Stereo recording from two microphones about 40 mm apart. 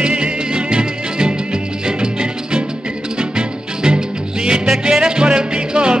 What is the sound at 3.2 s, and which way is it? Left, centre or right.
Music, right.